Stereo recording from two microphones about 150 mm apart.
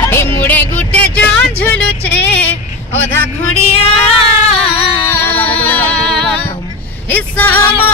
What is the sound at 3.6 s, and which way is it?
Female singing, 45° left (ahead or behind).